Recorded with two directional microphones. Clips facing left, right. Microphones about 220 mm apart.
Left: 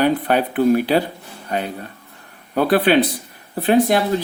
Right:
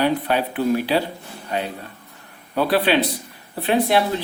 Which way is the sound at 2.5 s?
50° left (ahead or behind).